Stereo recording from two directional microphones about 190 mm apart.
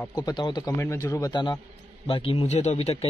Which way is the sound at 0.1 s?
20° left (ahead or behind).